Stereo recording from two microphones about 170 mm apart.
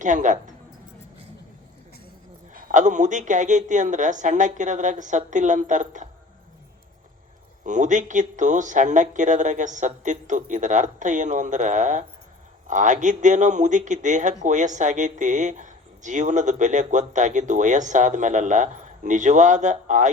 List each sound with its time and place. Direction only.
0.0 s speech: 45° right (ahead or behind)
2.5 s speech: 50° right (ahead or behind)
7.6 s speech: 45° right (ahead or behind)